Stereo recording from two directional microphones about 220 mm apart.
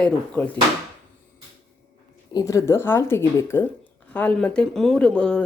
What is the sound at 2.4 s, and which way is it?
A woman's voice, 15° left (ahead or behind).